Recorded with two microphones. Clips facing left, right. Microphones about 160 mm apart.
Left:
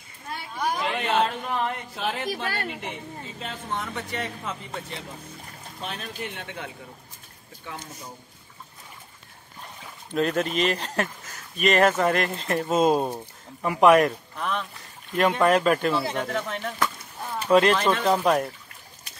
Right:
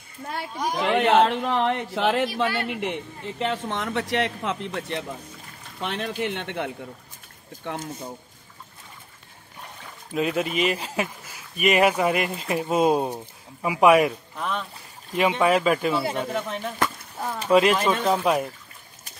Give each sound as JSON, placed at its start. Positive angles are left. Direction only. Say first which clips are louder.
{"t": 0.7, "sound": "speech", "louder": "right 7 dB", "side_deg": -65}
{"t": 2.4, "sound": "a man's voice", "louder": "right 5 dB", "side_deg": 40}
{"t": 2.7, "sound": "speech", "louder": "right 6 dB", "side_deg": -70}
{"t": 10.1, "sound": "a man's voice", "louder": "even", "side_deg": -5}